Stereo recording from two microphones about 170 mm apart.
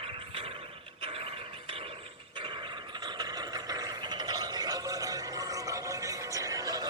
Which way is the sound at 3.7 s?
25° right (ahead or behind).